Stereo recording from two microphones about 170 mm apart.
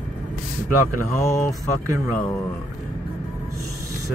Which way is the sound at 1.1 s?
15° left (ahead or behind).